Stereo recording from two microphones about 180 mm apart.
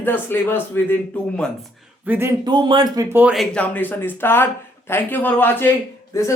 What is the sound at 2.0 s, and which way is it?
Speech, 10° right (ahead or behind).